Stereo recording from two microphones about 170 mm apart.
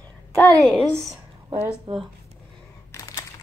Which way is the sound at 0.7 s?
10° right (ahead or behind).